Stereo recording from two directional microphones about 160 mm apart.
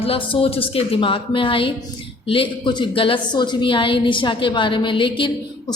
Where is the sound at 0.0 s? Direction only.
35° left (ahead or behind).